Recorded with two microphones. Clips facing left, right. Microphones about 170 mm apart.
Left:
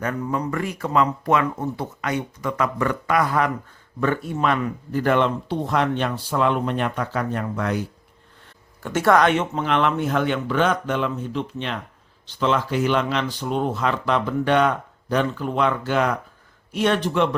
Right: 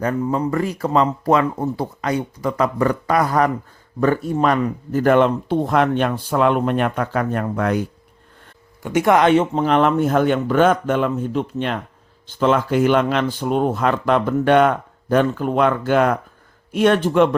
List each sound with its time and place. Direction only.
0.0 s speech: 30° right (ahead or behind); by 7.9 s 55° right (ahead or behind)
8.8 s speech: 15° right (ahead or behind)
9.2 s speech: 35° right (ahead or behind); by 17.2 s 50° right (ahead or behind)